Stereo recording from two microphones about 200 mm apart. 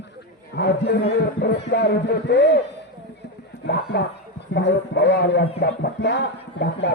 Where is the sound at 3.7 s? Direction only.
55° left (ahead or behind).